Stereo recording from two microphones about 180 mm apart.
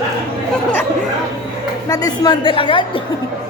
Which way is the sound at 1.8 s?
20° left (ahead or behind).